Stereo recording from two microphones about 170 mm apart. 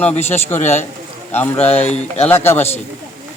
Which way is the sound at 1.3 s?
10° left (ahead or behind).